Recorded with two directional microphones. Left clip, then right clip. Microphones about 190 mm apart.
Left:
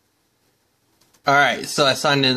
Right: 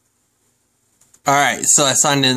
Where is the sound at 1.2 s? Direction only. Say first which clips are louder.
Right 1 dB; 20° right (ahead or behind).